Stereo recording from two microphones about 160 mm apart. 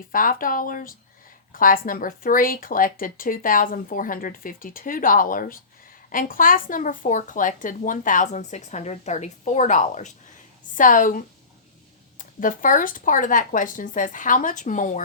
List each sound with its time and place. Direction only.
0.1 s a woman's voice: 60° left (ahead or behind)